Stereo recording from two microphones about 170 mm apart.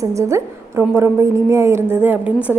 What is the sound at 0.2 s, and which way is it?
A woman's voice, 15° right (ahead or behind).